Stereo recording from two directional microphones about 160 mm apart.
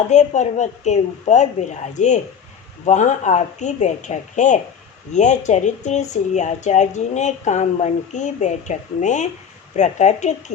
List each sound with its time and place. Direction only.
0.1 s speech: 45° left (ahead or behind)